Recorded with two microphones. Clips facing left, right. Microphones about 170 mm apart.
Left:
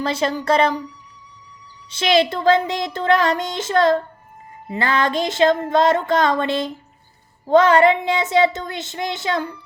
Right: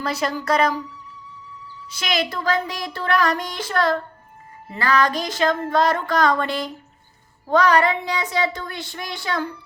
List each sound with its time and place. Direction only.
0.0 s speech: 25° left (ahead or behind)
1.9 s speech: 25° left (ahead or behind)